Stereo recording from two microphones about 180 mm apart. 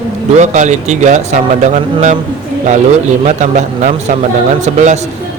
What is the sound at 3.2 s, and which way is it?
Speech, 40° right (ahead or behind).